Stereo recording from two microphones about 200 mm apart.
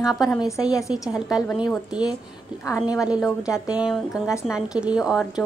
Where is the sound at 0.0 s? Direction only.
Centre (ahead or behind).